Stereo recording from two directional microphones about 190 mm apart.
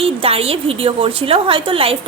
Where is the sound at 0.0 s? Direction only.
30° right (ahead or behind).